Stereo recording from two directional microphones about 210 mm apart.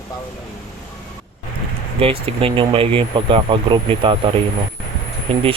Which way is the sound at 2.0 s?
25° right (ahead or behind).